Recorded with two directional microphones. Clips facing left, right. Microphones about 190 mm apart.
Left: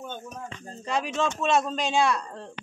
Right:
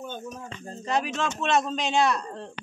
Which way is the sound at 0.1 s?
5° right (ahead or behind).